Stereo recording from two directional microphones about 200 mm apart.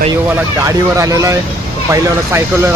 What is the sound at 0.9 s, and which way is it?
Speech, 15° right (ahead or behind).